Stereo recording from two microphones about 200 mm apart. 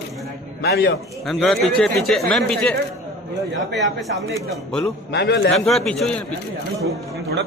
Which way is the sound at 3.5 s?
65° right (ahead or behind).